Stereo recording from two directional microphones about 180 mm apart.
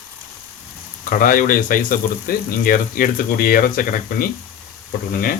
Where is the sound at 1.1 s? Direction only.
50° left (ahead or behind).